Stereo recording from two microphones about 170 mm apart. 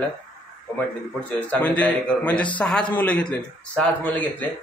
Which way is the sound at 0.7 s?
10° left (ahead or behind).